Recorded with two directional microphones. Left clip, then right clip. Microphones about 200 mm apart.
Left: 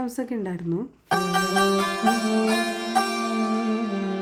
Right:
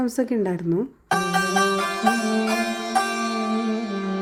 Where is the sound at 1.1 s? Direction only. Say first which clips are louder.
Right 1 dB; centre (ahead or behind).